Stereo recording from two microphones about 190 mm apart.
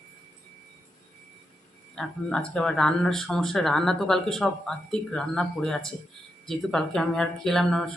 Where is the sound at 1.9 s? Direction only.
5° left (ahead or behind).